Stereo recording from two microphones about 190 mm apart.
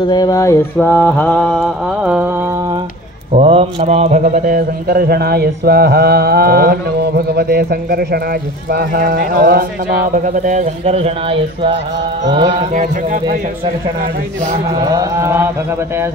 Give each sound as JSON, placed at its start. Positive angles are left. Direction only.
{"t": 0.0, "sound": "mantra", "side_deg": 20}
{"t": 3.3, "sound": "a man's voice", "side_deg": -30}
{"t": 10.1, "sound": "speech", "side_deg": -40}
{"t": 12.7, "sound": "speech", "side_deg": -45}
{"t": 14.9, "sound": "speech", "side_deg": -15}